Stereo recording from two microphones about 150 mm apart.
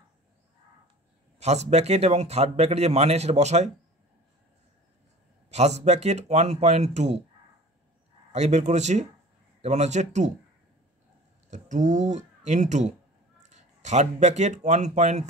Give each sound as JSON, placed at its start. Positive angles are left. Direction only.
{"t": 1.4, "sound": "speech", "side_deg": -45}
{"t": 5.5, "sound": "speech", "side_deg": -45}
{"t": 8.3, "sound": "speech", "side_deg": -50}
{"t": 11.5, "sound": "speech", "side_deg": -55}